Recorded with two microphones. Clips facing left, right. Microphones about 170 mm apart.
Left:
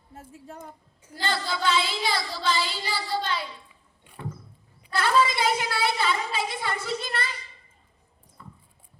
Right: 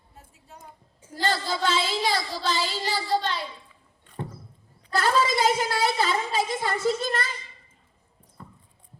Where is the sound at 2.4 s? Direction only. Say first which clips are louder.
Left 2 dB; 40° right (ahead or behind).